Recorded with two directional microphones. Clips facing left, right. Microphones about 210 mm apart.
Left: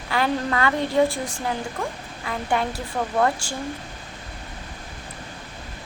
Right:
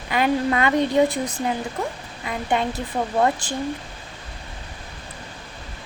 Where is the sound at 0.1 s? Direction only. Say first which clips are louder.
Right 3 dB; 20° right (ahead or behind).